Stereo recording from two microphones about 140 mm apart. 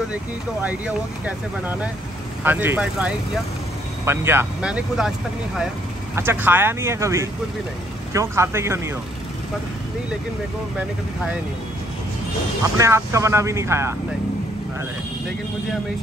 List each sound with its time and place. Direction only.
0.7 s speech: 10° right (ahead or behind)
6.1 s speech: 15° right (ahead or behind)
12.7 s speech: 20° right (ahead or behind)